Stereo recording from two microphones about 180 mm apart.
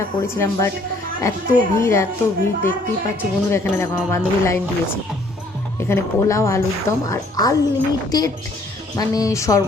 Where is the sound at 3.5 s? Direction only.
15° left (ahead or behind).